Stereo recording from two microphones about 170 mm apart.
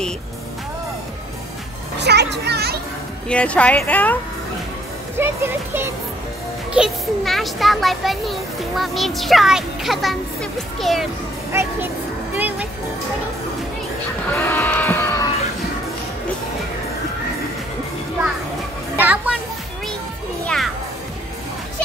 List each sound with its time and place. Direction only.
2.0 s a child's voice: 85° right
3.3 s a woman's voice: 5° left (ahead or behind)
5.1 s speech: 15° right (ahead or behind)
6.7 s a child's voice: centre (ahead or behind)
12.4 s music: 10° right (ahead or behind)
14.2 s sheep: 10° left (ahead or behind)
18.9 s children playing: 10° right (ahead or behind)
20.4 s music: centre (ahead or behind)